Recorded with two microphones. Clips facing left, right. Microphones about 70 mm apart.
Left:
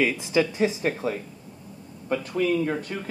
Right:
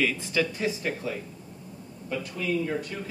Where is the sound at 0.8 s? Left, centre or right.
Left.